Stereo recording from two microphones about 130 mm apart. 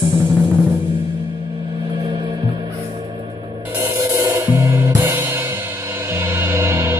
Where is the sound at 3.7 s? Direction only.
20° right (ahead or behind).